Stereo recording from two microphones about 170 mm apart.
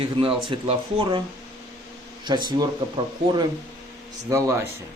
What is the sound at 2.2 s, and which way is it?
Speech, 25° right (ahead or behind).